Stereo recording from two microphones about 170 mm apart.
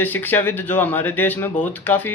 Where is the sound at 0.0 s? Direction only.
10° left (ahead or behind).